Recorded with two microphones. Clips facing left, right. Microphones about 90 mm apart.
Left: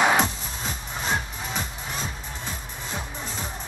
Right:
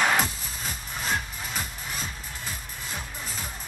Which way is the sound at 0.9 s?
Centre (ahead or behind).